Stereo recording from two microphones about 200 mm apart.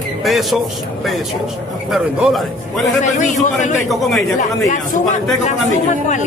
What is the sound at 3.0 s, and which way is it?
Speech, 35° left (ahead or behind).